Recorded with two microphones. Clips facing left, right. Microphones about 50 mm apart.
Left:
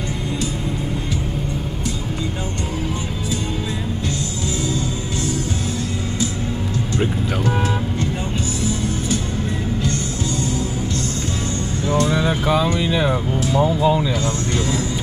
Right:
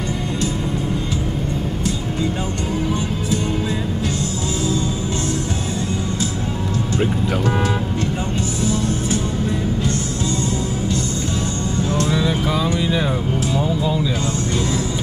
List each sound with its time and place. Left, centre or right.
11.9 s speech: left